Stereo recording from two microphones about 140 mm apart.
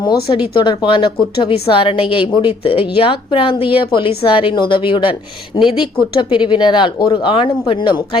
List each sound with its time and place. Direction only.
0.6 s speech: 35° left (ahead or behind)